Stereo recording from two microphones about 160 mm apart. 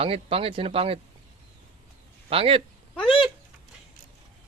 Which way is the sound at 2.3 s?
35° right (ahead or behind).